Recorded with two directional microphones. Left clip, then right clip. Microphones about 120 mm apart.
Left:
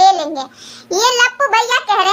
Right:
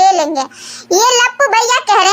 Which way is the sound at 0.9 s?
35° right (ahead or behind).